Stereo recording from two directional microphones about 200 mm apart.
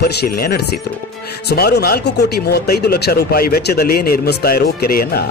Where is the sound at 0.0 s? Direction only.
50° left (ahead or behind).